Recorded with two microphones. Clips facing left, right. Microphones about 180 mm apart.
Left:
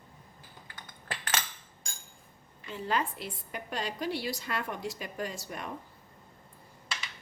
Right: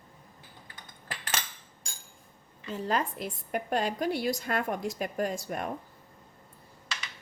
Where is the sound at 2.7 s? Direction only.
40° right (ahead or behind).